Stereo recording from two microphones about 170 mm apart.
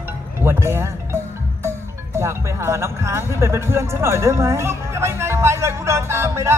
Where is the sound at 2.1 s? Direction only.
15° right (ahead or behind).